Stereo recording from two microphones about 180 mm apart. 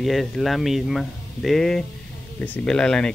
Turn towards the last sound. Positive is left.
turn(degrees=5)  # may be behind; listen again after turning